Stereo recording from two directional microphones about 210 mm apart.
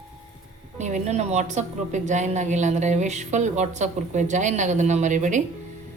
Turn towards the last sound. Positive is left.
turn(degrees=-35)  # may be behind; listen again after turning